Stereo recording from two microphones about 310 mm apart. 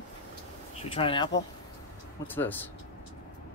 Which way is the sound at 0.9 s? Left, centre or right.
Centre.